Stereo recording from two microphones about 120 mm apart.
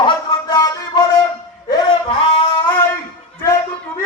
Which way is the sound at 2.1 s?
50° left (ahead or behind).